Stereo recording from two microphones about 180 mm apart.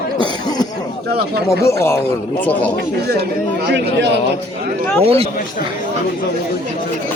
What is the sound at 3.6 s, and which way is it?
Speech, 75° right (ahead or behind).